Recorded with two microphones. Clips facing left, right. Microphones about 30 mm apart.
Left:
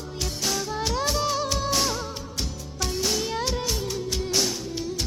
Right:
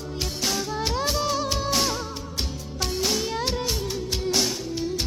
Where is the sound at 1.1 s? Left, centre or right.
Centre.